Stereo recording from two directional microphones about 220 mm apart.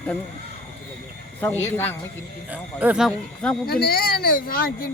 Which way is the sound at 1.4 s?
10° left (ahead or behind).